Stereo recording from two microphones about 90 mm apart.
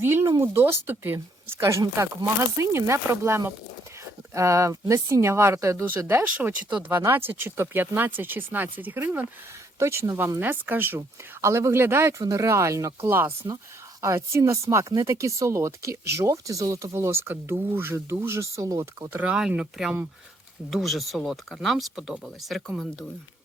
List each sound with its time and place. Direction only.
0.0 s speech: 25° right (ahead or behind)
6.2 s speech: 15° right (ahead or behind); by 10.4 s 35° right (ahead or behind)
10.4 s speech: 20° right (ahead or behind)
19.3 s speech: 10° right (ahead or behind)